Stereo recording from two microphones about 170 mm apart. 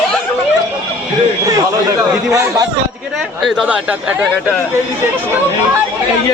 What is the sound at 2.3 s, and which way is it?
Speech, 20° right (ahead or behind).